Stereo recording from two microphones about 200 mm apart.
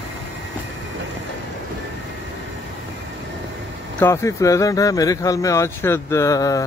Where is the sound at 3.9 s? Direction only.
15° left (ahead or behind).